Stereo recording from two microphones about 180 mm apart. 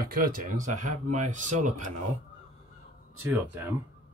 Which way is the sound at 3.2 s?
10° right (ahead or behind).